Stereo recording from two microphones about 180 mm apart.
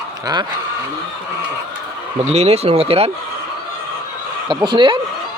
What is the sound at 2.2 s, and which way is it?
Speech, 40° right (ahead or behind).